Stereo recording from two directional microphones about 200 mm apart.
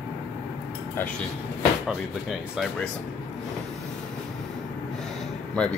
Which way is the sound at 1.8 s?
Centre (ahead or behind).